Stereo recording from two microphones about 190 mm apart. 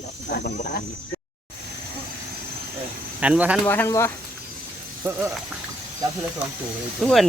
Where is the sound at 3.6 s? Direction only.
10° left (ahead or behind).